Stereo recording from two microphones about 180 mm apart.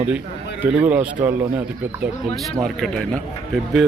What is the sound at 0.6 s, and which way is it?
Speech, 10° right (ahead or behind).